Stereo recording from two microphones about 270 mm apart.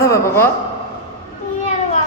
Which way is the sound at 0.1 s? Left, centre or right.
Centre.